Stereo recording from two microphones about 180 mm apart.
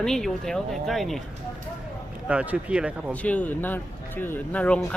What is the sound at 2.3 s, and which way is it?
Speech, 5° right (ahead or behind).